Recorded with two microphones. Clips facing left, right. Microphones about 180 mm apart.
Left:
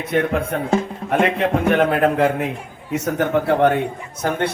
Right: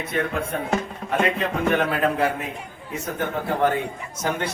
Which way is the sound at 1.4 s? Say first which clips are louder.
Left 5 dB; 60° left (ahead or behind).